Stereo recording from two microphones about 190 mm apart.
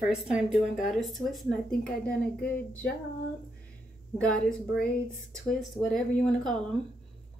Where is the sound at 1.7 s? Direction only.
55° left (ahead or behind).